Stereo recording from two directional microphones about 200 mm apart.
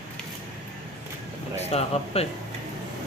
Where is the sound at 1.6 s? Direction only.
30° left (ahead or behind).